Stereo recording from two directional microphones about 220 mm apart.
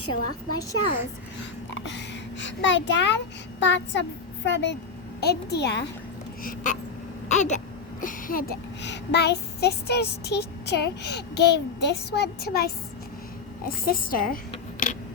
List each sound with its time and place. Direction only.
0.0 s a woman's voice: 90° left
1.8 s a sound: 55° left (ahead or behind)
3.6 s a child's voice: 55° left (ahead or behind)
6.4 s a woman's voice: 35° left (ahead or behind)
7.3 s a sound: 30° left (ahead or behind)
8.0 s a child's voice: 40° left (ahead or behind)